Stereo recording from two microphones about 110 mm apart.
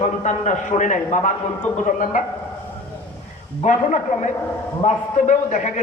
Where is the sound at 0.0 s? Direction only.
90° left.